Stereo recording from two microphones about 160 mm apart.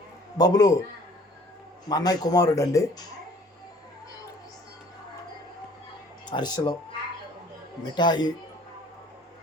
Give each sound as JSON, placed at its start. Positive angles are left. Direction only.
{"t": 0.3, "sound": "speech", "side_deg": 25}
{"t": 1.9, "sound": "speech", "side_deg": 25}
{"t": 6.2, "sound": "speech", "side_deg": 25}
{"t": 7.9, "sound": "speech", "side_deg": 30}